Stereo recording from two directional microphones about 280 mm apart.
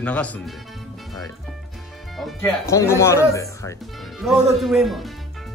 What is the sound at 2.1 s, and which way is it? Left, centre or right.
Speech, centre.